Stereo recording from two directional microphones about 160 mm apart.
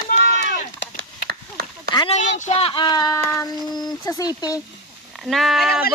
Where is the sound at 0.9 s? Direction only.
70° right (ahead or behind).